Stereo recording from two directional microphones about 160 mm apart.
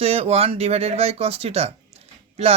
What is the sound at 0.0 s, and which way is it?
A man's voice, 40° right (ahead or behind).